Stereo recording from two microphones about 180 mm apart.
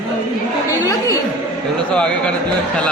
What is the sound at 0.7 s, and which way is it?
Speech, 20° left (ahead or behind).